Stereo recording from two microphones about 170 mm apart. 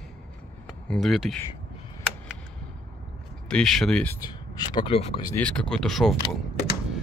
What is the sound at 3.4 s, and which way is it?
Speech, 5° left (ahead or behind).